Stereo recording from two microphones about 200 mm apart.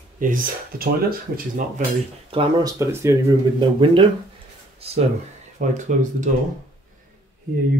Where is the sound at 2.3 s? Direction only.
25° right (ahead or behind).